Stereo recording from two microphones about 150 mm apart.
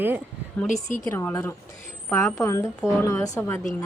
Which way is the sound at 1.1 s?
15° left (ahead or behind).